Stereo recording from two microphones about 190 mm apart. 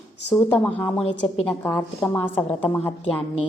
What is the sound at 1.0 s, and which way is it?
A woman's voice, 30° left (ahead or behind).